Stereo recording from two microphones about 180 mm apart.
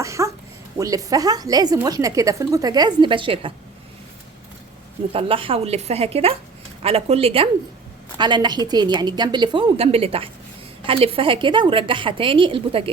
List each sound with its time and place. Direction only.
0.0 s a sound: 15° right (ahead or behind)
0.8 s speech: 20° right (ahead or behind)
5.1 s a woman's voice: 30° right (ahead or behind)